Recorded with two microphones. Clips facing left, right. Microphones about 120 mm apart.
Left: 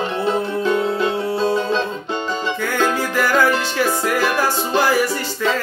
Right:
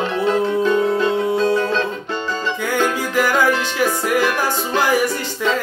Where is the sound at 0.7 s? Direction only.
15° left (ahead or behind).